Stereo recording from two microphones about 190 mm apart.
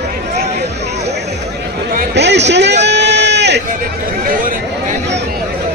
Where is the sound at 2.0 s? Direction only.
65° right (ahead or behind).